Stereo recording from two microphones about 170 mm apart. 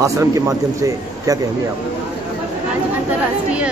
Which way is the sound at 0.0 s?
20° right (ahead or behind).